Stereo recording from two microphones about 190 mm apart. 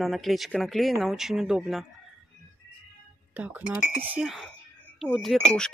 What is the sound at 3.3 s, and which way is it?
Speech, 10° right (ahead or behind).